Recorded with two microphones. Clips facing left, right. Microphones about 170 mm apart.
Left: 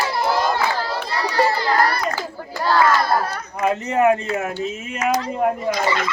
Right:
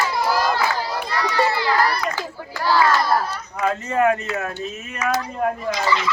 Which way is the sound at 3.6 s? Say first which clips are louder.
Left 2 dB; 20° left (ahead or behind).